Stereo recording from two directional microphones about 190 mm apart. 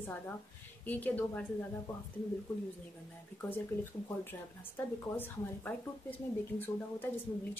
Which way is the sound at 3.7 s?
10° left (ahead or behind).